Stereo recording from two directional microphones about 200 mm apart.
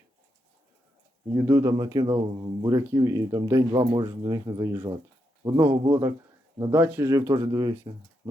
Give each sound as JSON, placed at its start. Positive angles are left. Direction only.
{"t": 1.5, "sound": "speech", "side_deg": -15}
{"t": 6.6, "sound": "speech", "side_deg": -10}